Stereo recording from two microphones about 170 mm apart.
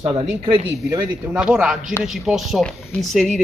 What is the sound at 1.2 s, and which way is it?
Speech, 5° right (ahead or behind).